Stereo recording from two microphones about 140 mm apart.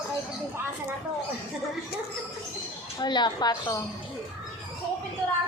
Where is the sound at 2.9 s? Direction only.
30° left (ahead or behind).